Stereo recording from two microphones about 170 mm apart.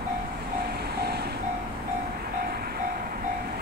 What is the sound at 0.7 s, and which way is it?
Vehicle, 65° right (ahead or behind).